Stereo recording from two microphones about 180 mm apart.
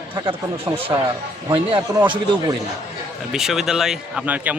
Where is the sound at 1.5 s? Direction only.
25° right (ahead or behind).